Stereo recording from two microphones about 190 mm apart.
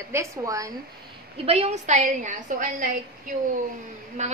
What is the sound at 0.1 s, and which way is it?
Speech, 15° right (ahead or behind).